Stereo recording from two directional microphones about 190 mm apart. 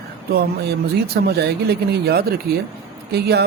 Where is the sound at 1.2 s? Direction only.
60° right (ahead or behind).